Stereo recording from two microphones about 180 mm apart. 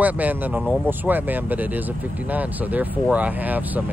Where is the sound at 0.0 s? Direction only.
10° right (ahead or behind).